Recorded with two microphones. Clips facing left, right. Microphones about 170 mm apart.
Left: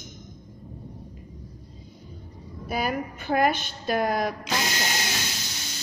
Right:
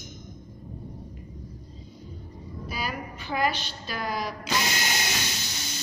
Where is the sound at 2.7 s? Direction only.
50° left (ahead or behind).